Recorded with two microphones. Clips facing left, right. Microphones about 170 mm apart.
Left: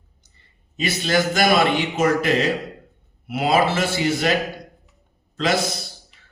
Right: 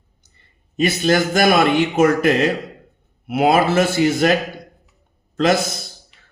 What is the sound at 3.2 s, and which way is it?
Speech, 50° right (ahead or behind).